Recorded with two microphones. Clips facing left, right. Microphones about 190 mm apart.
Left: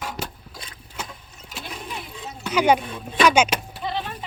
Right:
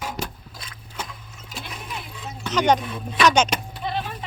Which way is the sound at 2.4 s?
10° left (ahead or behind).